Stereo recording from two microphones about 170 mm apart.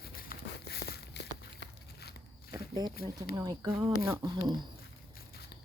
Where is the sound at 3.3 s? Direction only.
20° right (ahead or behind).